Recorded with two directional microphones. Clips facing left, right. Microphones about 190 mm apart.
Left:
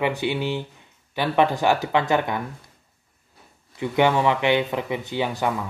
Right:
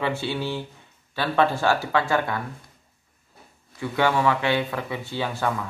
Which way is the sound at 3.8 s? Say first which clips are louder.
Left 3 dB; 20° left (ahead or behind).